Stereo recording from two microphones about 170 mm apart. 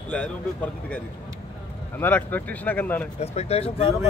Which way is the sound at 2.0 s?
10° left (ahead or behind).